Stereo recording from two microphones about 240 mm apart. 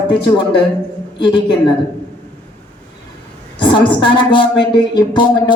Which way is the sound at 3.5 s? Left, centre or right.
Centre.